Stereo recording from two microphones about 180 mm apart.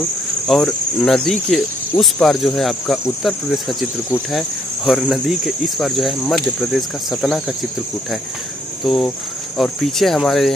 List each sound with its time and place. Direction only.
0.5 s cricket: centre (ahead or behind)
8.8 s cricket: centre (ahead or behind)